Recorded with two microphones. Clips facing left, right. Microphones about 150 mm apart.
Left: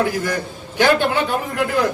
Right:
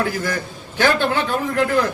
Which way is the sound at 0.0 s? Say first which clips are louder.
Left 2 dB; 15° left (ahead or behind).